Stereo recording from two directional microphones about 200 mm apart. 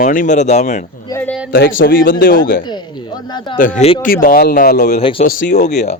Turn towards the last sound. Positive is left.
turn(degrees=40)  # may be behind; listen again after turning